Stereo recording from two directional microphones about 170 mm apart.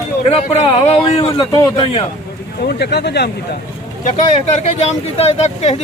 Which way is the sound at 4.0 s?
40° left (ahead or behind).